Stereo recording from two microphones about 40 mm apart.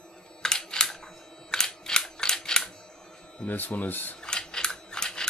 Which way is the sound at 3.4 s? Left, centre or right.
Left.